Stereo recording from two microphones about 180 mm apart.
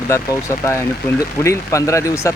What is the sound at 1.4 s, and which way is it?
Speech, 15° left (ahead or behind).